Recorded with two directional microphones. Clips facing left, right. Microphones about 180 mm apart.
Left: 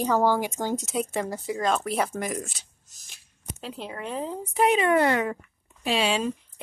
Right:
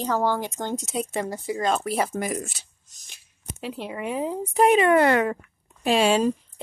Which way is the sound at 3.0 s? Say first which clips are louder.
Right 2 dB; centre (ahead or behind).